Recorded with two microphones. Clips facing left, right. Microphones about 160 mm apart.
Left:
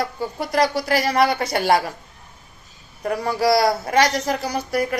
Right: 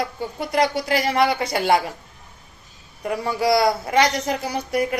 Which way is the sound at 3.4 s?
20° right (ahead or behind).